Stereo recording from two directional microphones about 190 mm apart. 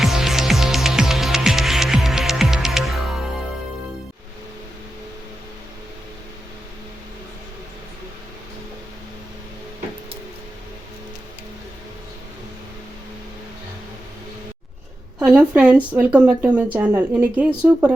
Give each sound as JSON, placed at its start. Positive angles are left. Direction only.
{"t": 0.0, "sound": "music", "side_deg": 0}
{"t": 15.2, "sound": "a woman's voice", "side_deg": -5}